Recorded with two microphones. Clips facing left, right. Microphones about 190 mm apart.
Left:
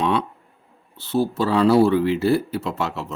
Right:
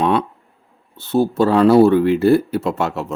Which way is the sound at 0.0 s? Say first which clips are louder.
Right 4 dB; 55° right (ahead or behind).